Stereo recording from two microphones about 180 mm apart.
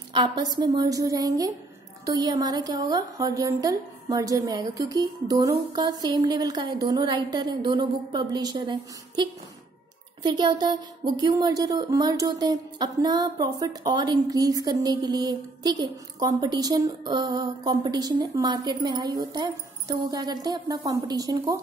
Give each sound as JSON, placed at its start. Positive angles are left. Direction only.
{"t": 0.1, "sound": "a woman's voice", "side_deg": -25}